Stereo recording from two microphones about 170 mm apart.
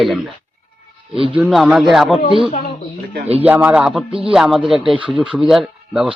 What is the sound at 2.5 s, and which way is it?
Speech, 55° left (ahead or behind).